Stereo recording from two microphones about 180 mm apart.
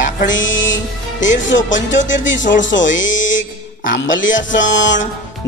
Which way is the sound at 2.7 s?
90° left.